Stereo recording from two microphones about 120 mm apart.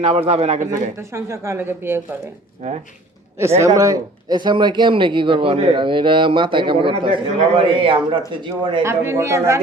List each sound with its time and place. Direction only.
0.0 s a man's voice: 55° right (ahead or behind)
0.9 s a woman's voice: 25° right (ahead or behind)
3.8 s a man's voice: 30° right (ahead or behind)
8.8 s a woman's voice: 20° right (ahead or behind)